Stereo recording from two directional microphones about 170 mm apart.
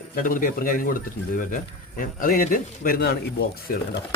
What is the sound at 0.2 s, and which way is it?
A man's voice, 55° left (ahead or behind).